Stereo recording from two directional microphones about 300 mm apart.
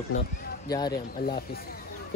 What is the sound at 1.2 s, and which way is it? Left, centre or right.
Speech, left.